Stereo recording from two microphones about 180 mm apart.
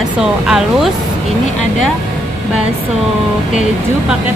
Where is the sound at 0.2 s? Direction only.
5° right (ahead or behind).